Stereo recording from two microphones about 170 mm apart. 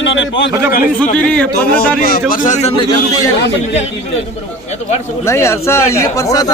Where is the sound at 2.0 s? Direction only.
60° left (ahead or behind).